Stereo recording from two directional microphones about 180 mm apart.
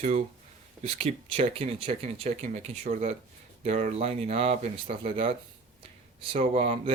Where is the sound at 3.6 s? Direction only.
40° right (ahead or behind).